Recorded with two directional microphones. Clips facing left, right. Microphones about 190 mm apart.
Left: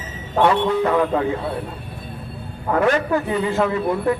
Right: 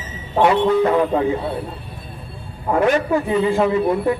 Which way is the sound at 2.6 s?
15° right (ahead or behind).